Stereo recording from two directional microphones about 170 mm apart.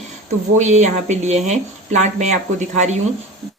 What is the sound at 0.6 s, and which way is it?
A woman's voice, 45° right (ahead or behind).